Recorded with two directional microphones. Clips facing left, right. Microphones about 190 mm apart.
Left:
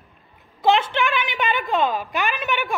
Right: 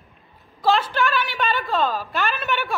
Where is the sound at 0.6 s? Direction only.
20° left (ahead or behind).